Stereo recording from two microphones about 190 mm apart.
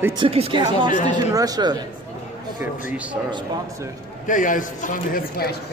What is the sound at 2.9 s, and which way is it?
Speech, 5° right (ahead or behind).